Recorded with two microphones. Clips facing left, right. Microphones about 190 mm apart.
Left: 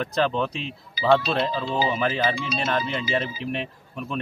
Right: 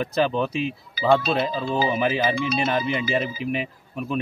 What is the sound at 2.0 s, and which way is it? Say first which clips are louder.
Speech: right 2 dB; 10° right (ahead or behind).